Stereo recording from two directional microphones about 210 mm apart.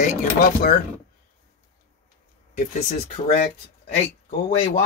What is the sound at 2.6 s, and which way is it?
Speech, 35° left (ahead or behind).